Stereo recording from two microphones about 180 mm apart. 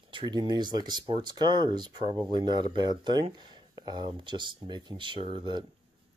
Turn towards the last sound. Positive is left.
turn(degrees=-25)  # may be behind; listen again after turning